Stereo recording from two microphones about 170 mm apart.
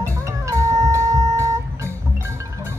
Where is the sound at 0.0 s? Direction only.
20° right (ahead or behind).